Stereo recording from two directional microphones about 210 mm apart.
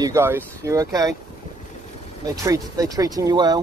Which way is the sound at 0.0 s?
10° right (ahead or behind).